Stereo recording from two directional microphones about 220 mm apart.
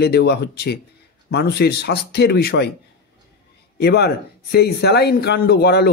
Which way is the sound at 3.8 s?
45° left (ahead or behind).